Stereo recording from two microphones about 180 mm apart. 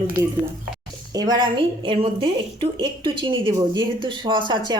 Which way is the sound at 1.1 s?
25° right (ahead or behind).